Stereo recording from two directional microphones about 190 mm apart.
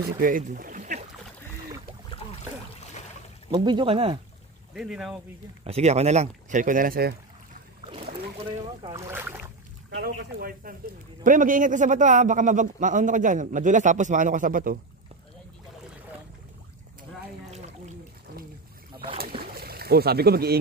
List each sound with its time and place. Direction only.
0.2 s speech: 45° right (ahead or behind)
2.1 s a sound: 25° left (ahead or behind)
3.5 s speech: 25° right (ahead or behind)
4.7 s speech: 5° right (ahead or behind)
5.6 s speech: 35° right (ahead or behind); by 7.2 s 50° right (ahead or behind)
7.8 s boat: 30° right (ahead or behind)
8.9 s speech: 15° right (ahead or behind)
9.8 s speech: 60° right (ahead or behind)
17.5 s a sound: 35° right (ahead or behind)
19.4 s a sound: 55° right (ahead or behind)